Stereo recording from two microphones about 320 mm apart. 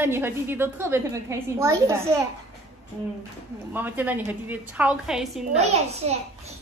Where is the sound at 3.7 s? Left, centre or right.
Centre.